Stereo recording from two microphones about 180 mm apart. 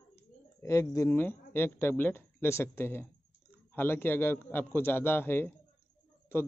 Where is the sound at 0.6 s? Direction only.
15° left (ahead or behind).